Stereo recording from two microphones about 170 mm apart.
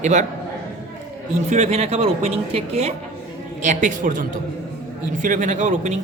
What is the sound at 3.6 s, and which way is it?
Speech, 45° right (ahead or behind).